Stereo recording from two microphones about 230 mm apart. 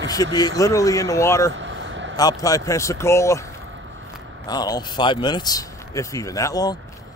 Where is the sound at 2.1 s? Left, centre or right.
Centre.